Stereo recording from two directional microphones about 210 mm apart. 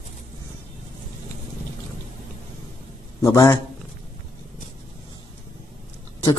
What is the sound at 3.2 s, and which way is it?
Speech, 15° left (ahead or behind).